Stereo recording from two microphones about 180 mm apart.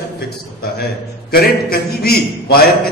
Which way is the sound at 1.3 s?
55° left (ahead or behind).